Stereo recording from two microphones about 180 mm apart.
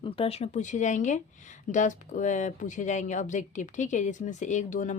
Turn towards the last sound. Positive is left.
turn(degrees=45)  # may be behind; listen again after turning